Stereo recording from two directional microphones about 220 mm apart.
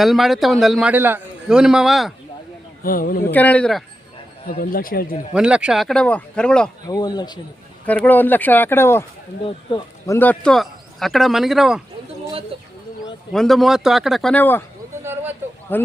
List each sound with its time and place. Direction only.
0.0 s a man's voice: centre (ahead or behind)
2.8 s speech: 40° left (ahead or behind)
3.3 s a man's voice: 5° left (ahead or behind)
4.4 s speech: 40° left (ahead or behind)
5.3 s a man's voice: 5° right (ahead or behind)
6.8 s speech: 15° left (ahead or behind)
10.2 s a man's voice: 5° left (ahead or behind)
12.5 s speech: 25° right (ahead or behind)
13.3 s a man's voice: centre (ahead or behind)
15.0 s a sound: 10° right (ahead or behind)
15.7 s speech: 10° left (ahead or behind)